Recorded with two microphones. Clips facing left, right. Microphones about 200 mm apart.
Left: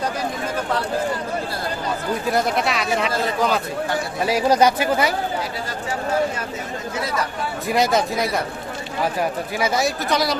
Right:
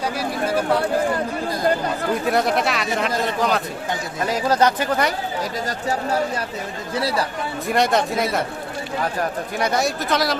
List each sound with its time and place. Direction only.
0.2 s chatter: 10° right (ahead or behind)
2.3 s speech: centre (ahead or behind)
4.3 s speech: 10° left (ahead or behind)
6.9 s speech: 35° right (ahead or behind)
7.7 s speech: centre (ahead or behind)
9.6 s speech: centre (ahead or behind)